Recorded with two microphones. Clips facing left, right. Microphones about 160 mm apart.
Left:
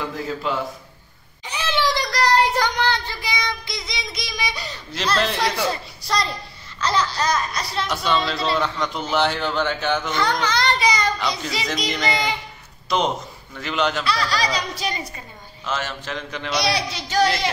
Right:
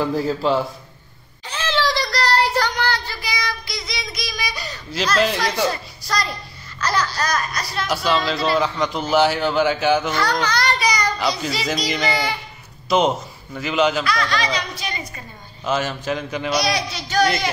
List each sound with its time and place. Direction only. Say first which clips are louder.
0.1 s a man's voice: right 6 dB; 30° right (ahead or behind)
1.4 s a sound: right 1 dB; 15° left (ahead or behind)
4.9 s a man's voice: right 3 dB; centre (ahead or behind)
5.7 s a woman's voice: even; 25° left (ahead or behind)
7.9 s a man's voice: right 3 dB; 5° right (ahead or behind)
10.1 s a sound: right 1 dB; 20° left (ahead or behind)
11.1 s a child's voice: right 3 dB; 5° right (ahead or behind)
12.1 s a child's voice: right 1 dB; 20° left (ahead or behind)
12.9 s a man's voice: right 4 dB; 5° right (ahead or behind)
14.0 s speech: right 1 dB; 35° left (ahead or behind)
15.6 s speech: right 5 dB; 15° right (ahead or behind)
16.5 s a child's voice: left 1 dB; 30° left (ahead or behind)